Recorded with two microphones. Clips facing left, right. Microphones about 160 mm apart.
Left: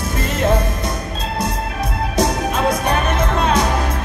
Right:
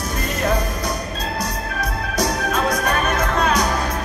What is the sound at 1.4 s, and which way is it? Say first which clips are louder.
Organ: left 3 dB; 25° left (ahead or behind).